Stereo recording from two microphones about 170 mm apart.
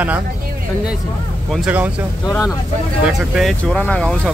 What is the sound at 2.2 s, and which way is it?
Speech, 15° left (ahead or behind).